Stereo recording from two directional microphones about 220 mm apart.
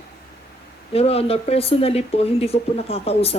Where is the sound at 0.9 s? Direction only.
25° left (ahead or behind).